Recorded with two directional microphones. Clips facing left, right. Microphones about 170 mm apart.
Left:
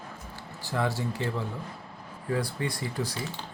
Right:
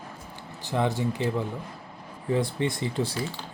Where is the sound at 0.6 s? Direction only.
20° right (ahead or behind).